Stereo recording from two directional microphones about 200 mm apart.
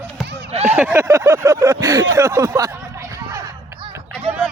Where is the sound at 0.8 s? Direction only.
10° right (ahead or behind).